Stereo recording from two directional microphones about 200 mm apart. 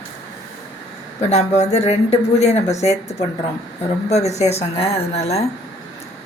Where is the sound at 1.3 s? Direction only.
35° left (ahead or behind).